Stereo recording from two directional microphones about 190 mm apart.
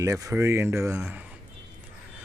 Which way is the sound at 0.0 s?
15° right (ahead or behind).